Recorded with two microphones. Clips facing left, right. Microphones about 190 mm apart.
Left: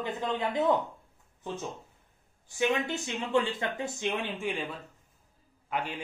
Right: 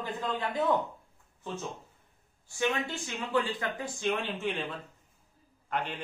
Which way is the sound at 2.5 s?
20° left (ahead or behind).